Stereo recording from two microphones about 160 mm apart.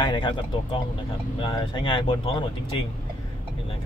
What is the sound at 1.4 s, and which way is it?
Speech, 30° left (ahead or behind).